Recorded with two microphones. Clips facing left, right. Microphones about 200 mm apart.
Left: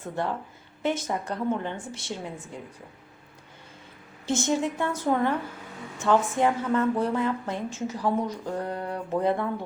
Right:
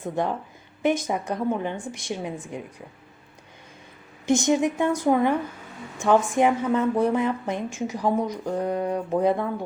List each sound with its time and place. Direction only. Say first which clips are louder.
0.0 s a woman's voice: right 4 dB; 15° right (ahead or behind)
4.3 s a woman's voice: right 5 dB; 15° right (ahead or behind)